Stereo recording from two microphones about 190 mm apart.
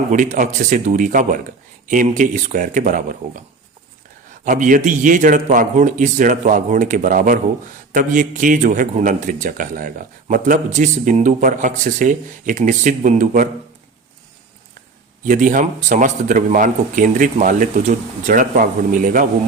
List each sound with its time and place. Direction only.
0.1 s a man's voice: 40° right (ahead or behind)
4.4 s a man's voice: 40° right (ahead or behind)
15.2 s speech: 40° right (ahead or behind)